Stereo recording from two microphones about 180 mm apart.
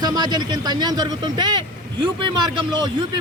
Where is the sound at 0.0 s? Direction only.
25° right (ahead or behind).